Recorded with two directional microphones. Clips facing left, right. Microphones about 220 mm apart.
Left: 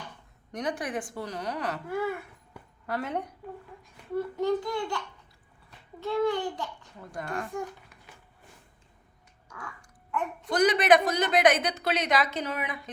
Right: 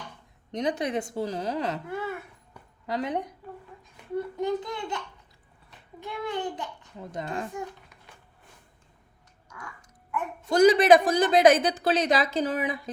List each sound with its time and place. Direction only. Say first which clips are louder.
0.5 s a child's voice: right 4 dB; 20° right (ahead or behind)
4.4 s a child's voice: left 3 dB; 20° right (ahead or behind)
10.5 s a woman's voice: right 5 dB; 30° right (ahead or behind)